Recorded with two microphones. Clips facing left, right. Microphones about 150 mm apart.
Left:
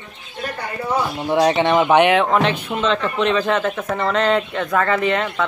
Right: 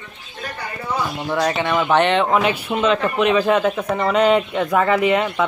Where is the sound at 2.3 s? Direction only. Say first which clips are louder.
Even; 5° right (ahead or behind).